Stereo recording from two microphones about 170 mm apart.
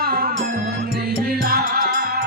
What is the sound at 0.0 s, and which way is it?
Music, 60° right (ahead or behind).